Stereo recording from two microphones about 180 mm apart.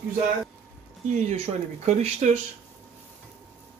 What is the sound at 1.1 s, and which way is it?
Speech, 40° right (ahead or behind).